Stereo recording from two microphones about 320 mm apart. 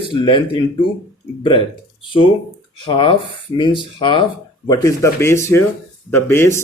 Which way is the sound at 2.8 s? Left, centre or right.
Centre.